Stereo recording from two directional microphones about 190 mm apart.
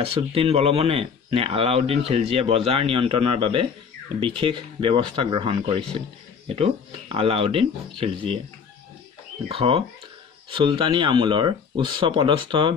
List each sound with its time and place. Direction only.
0.0 s speech: 30° right (ahead or behind)
9.5 s speech: 30° right (ahead or behind)